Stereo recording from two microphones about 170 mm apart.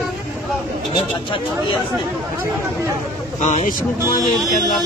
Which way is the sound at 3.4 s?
45° left (ahead or behind).